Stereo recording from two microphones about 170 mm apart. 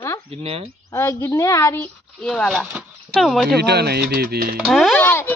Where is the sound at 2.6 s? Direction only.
5° right (ahead or behind).